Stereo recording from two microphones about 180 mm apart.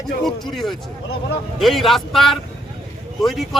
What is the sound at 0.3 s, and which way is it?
A man's voice, centre (ahead or behind).